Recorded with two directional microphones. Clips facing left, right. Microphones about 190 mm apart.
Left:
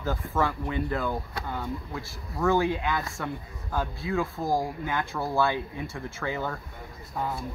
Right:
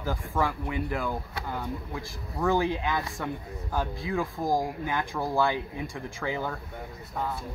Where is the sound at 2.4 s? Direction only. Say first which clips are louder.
Left 1 dB; 15° right (ahead or behind).